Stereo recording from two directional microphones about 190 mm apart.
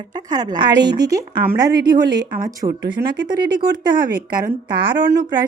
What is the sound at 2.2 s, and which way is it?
Speech, 50° right (ahead or behind).